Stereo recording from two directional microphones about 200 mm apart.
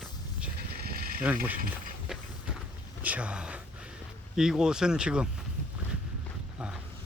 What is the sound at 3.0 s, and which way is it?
Speech, 5° right (ahead or behind).